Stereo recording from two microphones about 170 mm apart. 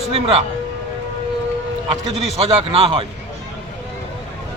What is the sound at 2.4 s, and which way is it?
Speech, 35° right (ahead or behind).